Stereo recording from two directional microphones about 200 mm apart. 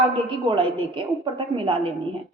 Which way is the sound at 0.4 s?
25° right (ahead or behind).